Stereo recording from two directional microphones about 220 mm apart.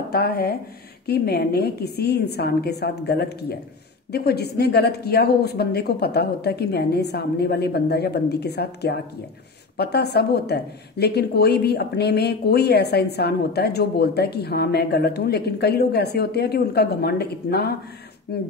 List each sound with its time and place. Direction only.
0.1 s speech: 45° left (ahead or behind)